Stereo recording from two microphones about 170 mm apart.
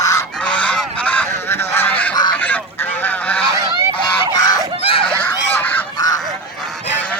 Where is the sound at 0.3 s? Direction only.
5° left (ahead or behind).